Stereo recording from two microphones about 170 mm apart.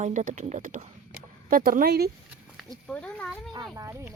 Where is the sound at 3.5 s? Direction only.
20° right (ahead or behind).